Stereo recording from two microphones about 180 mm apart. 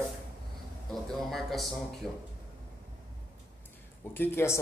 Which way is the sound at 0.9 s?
Centre (ahead or behind).